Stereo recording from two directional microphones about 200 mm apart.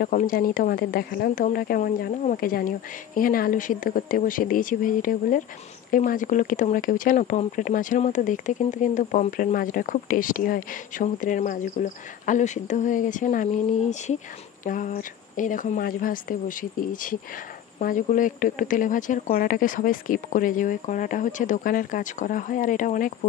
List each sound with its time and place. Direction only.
0.0 s speech: 45° left (ahead or behind)